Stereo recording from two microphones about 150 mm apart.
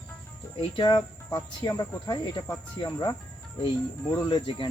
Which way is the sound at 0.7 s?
30° left (ahead or behind).